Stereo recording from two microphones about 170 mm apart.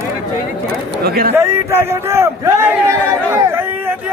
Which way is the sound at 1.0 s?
65° right (ahead or behind).